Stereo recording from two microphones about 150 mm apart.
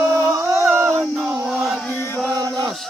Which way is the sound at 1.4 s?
Centre (ahead or behind).